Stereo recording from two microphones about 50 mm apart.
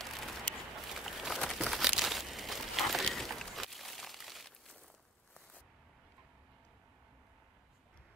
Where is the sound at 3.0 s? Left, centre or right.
Centre.